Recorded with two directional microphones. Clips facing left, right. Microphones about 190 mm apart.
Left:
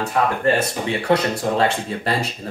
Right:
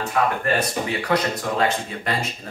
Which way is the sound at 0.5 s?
30° left (ahead or behind).